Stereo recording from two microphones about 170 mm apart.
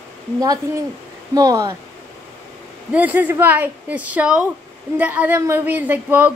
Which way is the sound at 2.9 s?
10° right (ahead or behind).